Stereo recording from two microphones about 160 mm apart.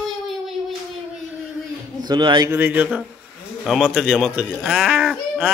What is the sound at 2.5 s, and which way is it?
A man's voice, 10° right (ahead or behind).